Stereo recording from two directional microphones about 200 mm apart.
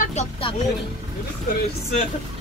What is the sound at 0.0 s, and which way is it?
Speech, 35° left (ahead or behind).